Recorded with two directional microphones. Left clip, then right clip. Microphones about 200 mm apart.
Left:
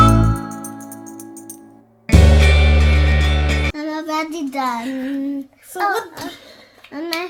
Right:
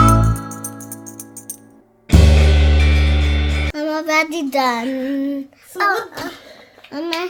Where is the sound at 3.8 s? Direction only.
40° right (ahead or behind).